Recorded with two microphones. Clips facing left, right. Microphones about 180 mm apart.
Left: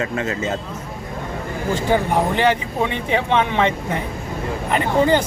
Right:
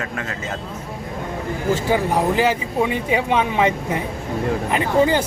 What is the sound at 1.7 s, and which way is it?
Speech, 5° right (ahead or behind).